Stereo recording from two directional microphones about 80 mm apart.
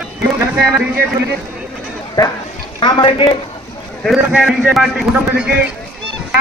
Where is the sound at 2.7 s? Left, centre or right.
Left.